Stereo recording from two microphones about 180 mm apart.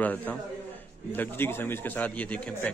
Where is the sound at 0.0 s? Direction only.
10° left (ahead or behind).